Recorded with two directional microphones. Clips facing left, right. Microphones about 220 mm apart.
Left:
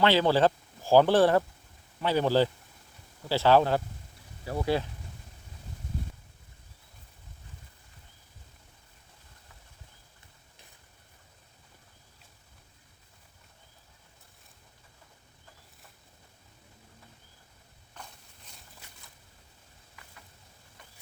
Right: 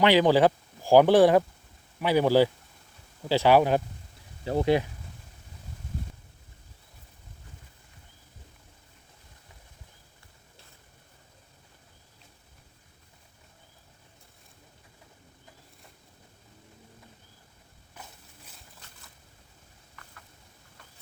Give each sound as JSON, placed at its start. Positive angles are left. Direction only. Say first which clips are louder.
{"t": 0.0, "sound": "speech", "louder": "right 3 dB", "side_deg": -15}
{"t": 18.0, "sound": "walk", "louder": "even", "side_deg": -10}